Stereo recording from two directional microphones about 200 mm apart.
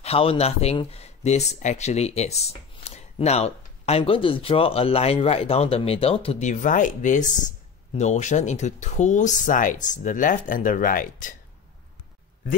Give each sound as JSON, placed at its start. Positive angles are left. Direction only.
{"t": 0.0, "sound": "speech", "side_deg": 30}